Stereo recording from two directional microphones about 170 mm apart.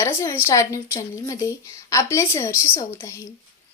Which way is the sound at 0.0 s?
15° left (ahead or behind).